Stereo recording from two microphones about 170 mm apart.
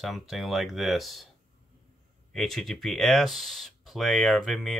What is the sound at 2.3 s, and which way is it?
Speech, centre (ahead or behind).